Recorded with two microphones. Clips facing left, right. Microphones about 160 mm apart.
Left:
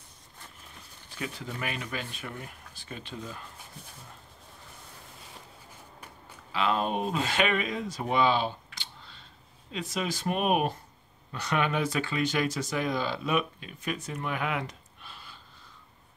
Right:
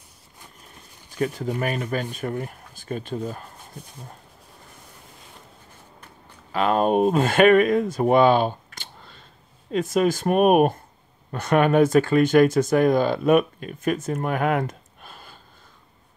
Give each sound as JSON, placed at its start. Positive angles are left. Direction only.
{"t": 1.1, "sound": "speech", "side_deg": -45}
{"t": 6.5, "sound": "speech", "side_deg": -50}